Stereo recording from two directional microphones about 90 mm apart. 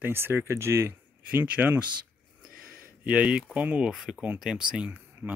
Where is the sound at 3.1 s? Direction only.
10° right (ahead or behind).